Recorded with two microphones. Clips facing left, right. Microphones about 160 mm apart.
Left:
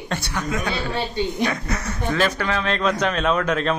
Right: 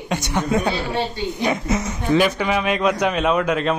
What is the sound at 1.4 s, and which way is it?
Speech, 15° right (ahead or behind).